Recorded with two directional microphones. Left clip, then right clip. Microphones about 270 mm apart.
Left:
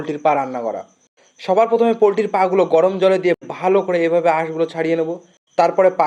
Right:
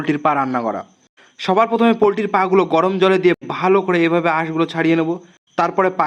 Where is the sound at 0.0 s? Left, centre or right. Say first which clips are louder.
Even; right.